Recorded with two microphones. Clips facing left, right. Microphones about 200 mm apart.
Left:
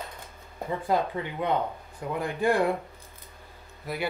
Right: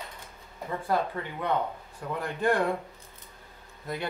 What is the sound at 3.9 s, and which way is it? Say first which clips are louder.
Speech: left 1 dB; 5° left (ahead or behind).